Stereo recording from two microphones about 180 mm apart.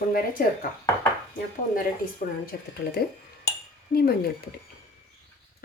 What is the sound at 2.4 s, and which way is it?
Speech, 60° left (ahead or behind).